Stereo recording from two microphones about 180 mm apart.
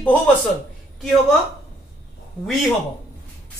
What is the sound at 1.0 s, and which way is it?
Speech, centre (ahead or behind).